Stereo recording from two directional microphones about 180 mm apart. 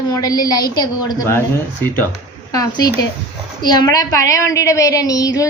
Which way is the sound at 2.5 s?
20° left (ahead or behind).